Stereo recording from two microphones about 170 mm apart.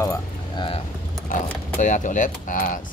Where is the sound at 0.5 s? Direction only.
30° left (ahead or behind).